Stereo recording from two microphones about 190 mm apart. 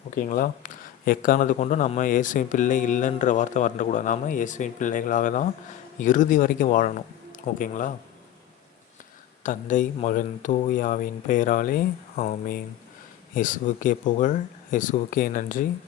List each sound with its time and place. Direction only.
0.2 s speech: 45° left (ahead or behind)
9.4 s speech: 40° left (ahead or behind)